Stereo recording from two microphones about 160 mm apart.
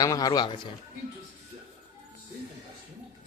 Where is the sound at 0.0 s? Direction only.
25° left (ahead or behind).